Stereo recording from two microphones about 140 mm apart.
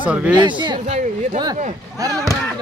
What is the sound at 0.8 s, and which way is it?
Speech, 55° right (ahead or behind).